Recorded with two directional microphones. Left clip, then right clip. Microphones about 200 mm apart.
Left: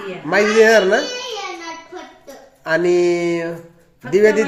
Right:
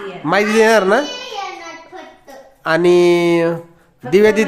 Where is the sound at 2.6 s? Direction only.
20° right (ahead or behind).